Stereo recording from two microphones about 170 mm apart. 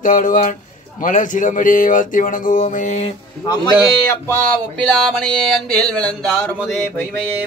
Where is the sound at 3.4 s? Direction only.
25° left (ahead or behind).